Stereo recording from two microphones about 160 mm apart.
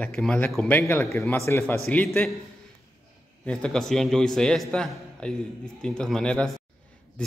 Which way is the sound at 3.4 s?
5° left (ahead or behind).